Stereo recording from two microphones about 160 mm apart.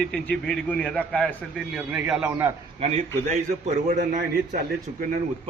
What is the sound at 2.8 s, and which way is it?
A man's voice, 45° right (ahead or behind).